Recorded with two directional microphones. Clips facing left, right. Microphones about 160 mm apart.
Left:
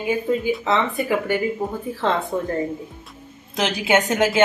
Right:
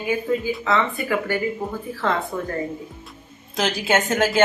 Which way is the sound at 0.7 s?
15° left (ahead or behind).